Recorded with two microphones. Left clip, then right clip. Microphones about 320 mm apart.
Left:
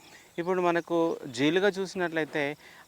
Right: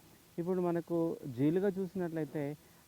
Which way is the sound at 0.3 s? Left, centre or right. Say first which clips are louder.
Left 8 dB; centre.